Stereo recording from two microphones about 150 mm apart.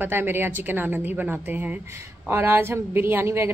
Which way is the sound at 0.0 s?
15° right (ahead or behind).